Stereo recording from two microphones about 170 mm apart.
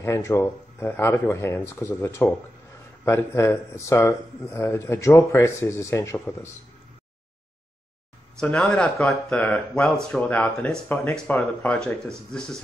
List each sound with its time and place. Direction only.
0.0 s a man's voice: 15° left (ahead or behind)
8.4 s speech: 5° left (ahead or behind)